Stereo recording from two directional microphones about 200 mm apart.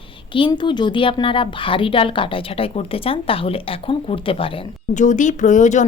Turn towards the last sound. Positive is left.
turn(degrees=35)  # may be behind; listen again after turning